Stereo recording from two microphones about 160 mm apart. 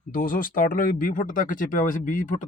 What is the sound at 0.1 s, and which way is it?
Speech, 60° left (ahead or behind).